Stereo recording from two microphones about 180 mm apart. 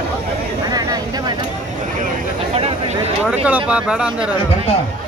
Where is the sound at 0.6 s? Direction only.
20° right (ahead or behind).